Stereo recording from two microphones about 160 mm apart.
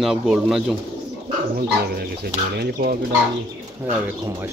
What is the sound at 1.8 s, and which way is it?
Speech, 75° right (ahead or behind).